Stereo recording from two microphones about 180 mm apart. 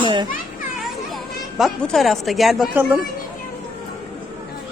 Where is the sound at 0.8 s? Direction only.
Centre (ahead or behind).